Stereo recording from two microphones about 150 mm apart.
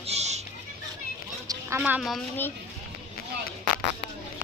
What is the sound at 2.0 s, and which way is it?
Speech, centre (ahead or behind).